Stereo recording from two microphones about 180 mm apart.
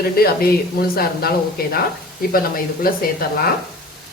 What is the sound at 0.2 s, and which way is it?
Speech, 55° left (ahead or behind).